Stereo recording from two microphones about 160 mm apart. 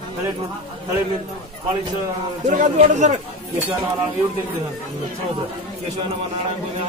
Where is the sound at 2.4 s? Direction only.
50° right (ahead or behind).